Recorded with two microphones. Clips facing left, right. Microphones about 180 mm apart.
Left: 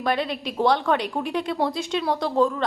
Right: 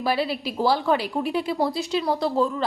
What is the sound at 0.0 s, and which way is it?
A woman's voice, 5° right (ahead or behind).